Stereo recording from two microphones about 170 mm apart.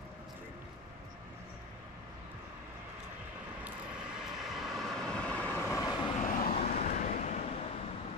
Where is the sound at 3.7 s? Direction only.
5° right (ahead or behind); by 6.1 s 20° left (ahead or behind).